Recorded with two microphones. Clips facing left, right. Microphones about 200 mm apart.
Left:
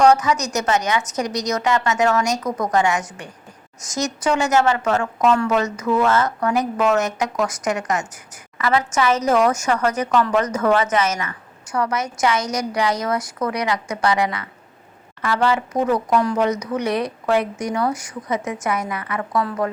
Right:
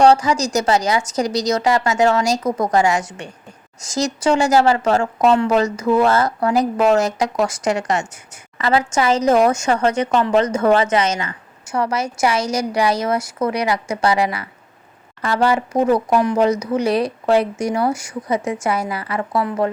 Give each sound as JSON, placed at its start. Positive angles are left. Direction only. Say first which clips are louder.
{"t": 0.0, "sound": "a woman's voice", "louder": "right 2 dB", "side_deg": -30}